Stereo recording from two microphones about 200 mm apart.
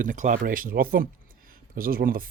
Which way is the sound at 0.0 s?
40° right (ahead or behind).